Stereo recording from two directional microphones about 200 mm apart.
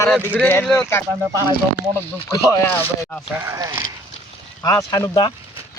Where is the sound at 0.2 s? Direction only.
10° right (ahead or behind).